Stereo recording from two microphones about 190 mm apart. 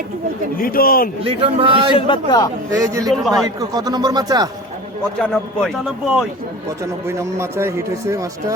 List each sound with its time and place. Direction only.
0.5 s a man's voice: 50° left (ahead or behind)
1.2 s speech: 30° right (ahead or behind)
2.0 s a man's voice: 25° left (ahead or behind)
2.7 s speech: 20° right (ahead or behind)
3.1 s a man's voice: centre (ahead or behind)
3.6 s speech: 20° right (ahead or behind)
5.2 s a man's voice: 5° left (ahead or behind)
7.2 s speech: 15° right (ahead or behind)